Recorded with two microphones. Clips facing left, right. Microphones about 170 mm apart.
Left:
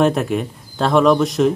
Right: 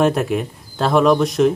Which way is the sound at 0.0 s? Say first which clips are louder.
Even; centre (ahead or behind).